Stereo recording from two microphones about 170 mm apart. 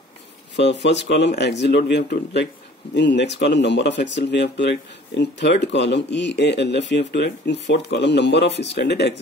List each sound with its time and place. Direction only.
0.6 s speech: 90° left
2.9 s speech: 90° left